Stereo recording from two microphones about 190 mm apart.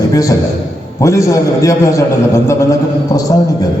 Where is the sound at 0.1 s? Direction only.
20° left (ahead or behind).